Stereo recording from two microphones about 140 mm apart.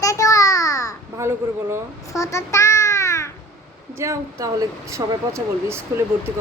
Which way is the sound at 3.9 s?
20° right (ahead or behind).